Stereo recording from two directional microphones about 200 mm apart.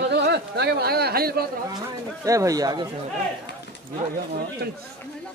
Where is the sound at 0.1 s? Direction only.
55° right (ahead or behind).